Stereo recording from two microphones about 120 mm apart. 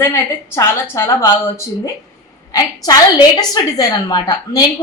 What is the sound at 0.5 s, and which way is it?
A woman's voice, 20° left (ahead or behind).